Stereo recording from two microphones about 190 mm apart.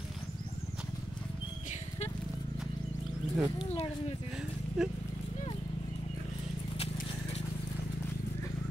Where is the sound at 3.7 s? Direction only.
30° left (ahead or behind).